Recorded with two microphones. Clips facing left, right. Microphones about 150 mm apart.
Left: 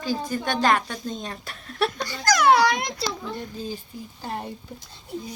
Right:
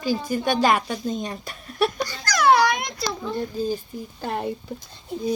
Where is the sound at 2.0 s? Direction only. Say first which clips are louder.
Left 2 dB; 20° left (ahead or behind).